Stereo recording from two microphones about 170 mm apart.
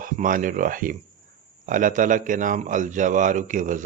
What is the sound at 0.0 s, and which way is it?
Speech, 50° right (ahead or behind).